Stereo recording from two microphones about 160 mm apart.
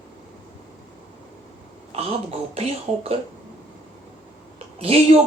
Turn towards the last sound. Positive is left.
turn(degrees=-35)  # may be behind; listen again after turning